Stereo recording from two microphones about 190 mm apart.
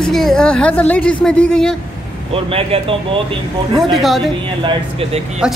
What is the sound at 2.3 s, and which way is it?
Speech, 30° right (ahead or behind).